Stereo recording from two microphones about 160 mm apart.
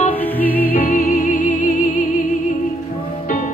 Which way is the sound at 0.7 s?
60° left (ahead or behind).